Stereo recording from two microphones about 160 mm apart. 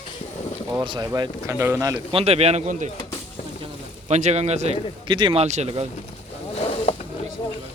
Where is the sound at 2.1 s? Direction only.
40° right (ahead or behind).